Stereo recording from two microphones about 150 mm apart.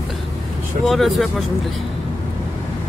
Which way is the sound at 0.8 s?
Centre (ahead or behind).